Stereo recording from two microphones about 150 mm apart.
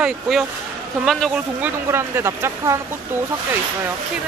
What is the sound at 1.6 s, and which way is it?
Speech, 15° right (ahead or behind).